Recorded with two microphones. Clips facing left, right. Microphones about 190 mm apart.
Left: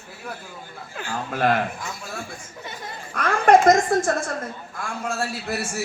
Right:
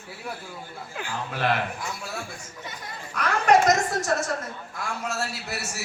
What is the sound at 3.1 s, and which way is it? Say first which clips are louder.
Speech: left 4 dB; 50° left (ahead or behind).